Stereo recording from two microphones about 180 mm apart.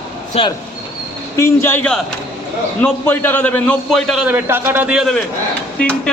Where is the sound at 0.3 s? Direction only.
35° left (ahead or behind).